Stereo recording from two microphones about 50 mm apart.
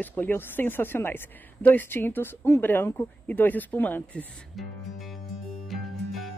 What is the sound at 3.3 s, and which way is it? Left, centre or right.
Speech, left.